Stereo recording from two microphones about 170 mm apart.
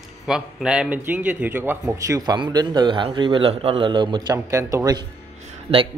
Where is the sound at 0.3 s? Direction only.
5° right (ahead or behind).